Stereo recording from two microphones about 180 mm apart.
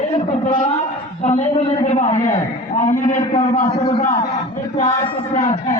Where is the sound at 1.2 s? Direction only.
40° left (ahead or behind).